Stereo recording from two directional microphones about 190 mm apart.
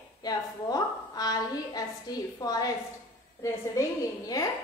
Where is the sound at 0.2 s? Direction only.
20° left (ahead or behind).